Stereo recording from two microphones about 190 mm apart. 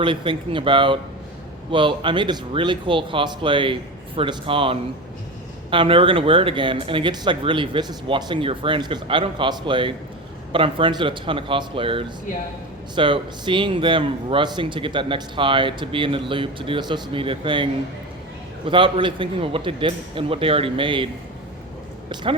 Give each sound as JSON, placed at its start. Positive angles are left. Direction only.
{"t": 0.0, "sound": "a man's voice", "side_deg": -25}
{"t": 22.1, "sound": "a man's voice", "side_deg": -25}